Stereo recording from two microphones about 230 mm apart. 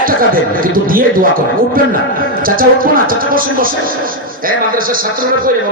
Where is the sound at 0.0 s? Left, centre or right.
Right.